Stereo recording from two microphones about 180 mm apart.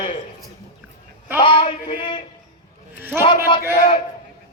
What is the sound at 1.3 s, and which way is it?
Speech, 25° left (ahead or behind).